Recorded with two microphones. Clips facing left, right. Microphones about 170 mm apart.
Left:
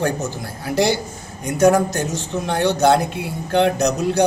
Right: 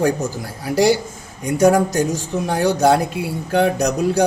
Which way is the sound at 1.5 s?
10° right (ahead or behind).